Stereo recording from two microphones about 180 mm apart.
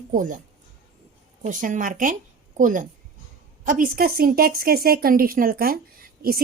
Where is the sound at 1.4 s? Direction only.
45° right (ahead or behind).